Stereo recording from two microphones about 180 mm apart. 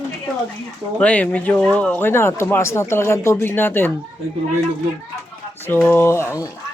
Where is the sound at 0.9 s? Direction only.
5° left (ahead or behind).